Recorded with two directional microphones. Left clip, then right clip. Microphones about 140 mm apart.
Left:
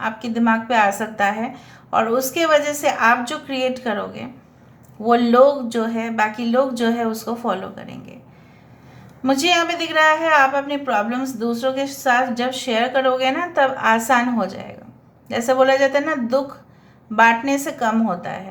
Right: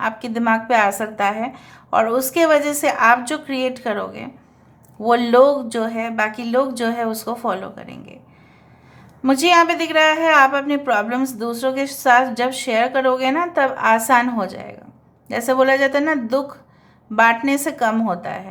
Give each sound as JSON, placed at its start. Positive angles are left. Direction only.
{"t": 0.0, "sound": "a woman's voice", "side_deg": -40}
{"t": 9.2, "sound": "a woman's voice", "side_deg": -35}